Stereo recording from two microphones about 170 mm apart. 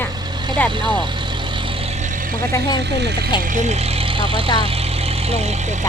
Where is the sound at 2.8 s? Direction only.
85° right.